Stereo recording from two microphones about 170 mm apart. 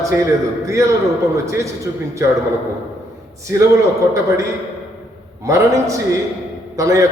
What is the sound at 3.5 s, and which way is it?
Speech, 15° right (ahead or behind).